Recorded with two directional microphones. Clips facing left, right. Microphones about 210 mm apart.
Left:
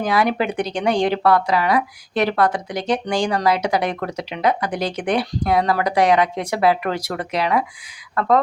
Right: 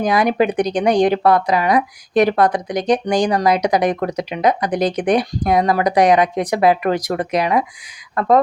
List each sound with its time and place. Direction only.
0.0 s speech: 15° right (ahead or behind)